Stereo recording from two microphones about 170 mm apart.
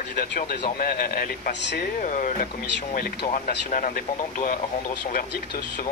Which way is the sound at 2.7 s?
65° left (ahead or behind).